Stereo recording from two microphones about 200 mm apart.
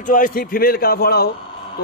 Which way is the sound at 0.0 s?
40° left (ahead or behind).